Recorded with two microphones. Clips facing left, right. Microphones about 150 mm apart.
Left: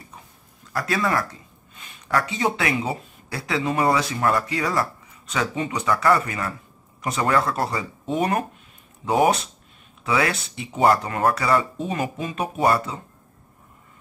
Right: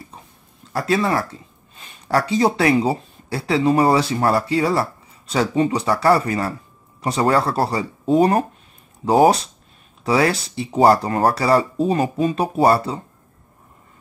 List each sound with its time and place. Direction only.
0.7 s speech: 30° right (ahead or behind)